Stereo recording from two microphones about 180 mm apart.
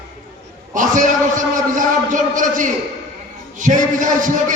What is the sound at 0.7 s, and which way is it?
A man's voice, 45° right (ahead or behind).